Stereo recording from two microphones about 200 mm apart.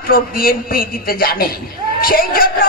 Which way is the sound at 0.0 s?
45° left (ahead or behind).